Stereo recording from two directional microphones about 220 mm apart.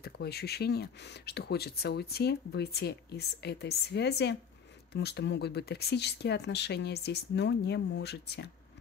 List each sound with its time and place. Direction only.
0.0 s speech: 45° left (ahead or behind)